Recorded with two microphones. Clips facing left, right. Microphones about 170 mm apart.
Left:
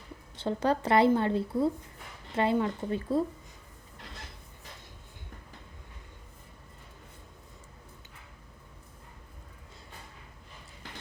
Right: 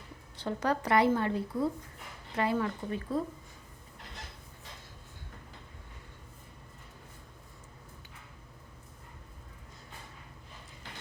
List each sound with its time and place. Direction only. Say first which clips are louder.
0.3 s a woman's voice: left 3 dB; 25° left (ahead or behind)